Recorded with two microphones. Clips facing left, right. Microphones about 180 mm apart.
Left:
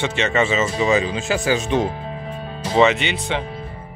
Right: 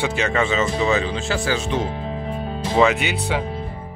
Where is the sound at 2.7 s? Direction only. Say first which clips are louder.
Left 1 dB; 5° right (ahead or behind).